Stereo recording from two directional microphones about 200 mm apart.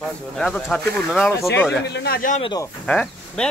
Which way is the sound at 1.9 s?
55° left (ahead or behind).